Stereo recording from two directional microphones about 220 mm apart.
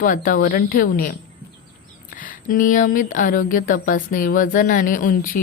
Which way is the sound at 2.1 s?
40° left (ahead or behind).